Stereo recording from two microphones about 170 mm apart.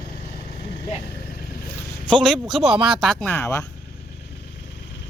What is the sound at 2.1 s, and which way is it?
Speech, centre (ahead or behind).